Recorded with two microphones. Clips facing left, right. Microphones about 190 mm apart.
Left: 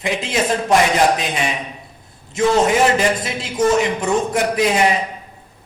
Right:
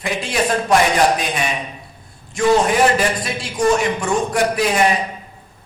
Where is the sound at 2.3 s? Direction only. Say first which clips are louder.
Even; 20° left (ahead or behind).